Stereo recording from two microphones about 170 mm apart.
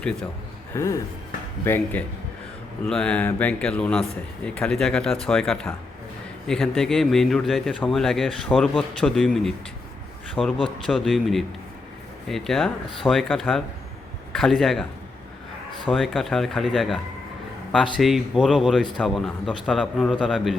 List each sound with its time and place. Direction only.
0.0 s a man's voice: 5° left (ahead or behind)
0.7 s a man's voice: 15° left (ahead or behind); by 14.8 s centre (ahead or behind)
15.9 s a man's voice: centre (ahead or behind)
18.0 s a man's voice: centre (ahead or behind)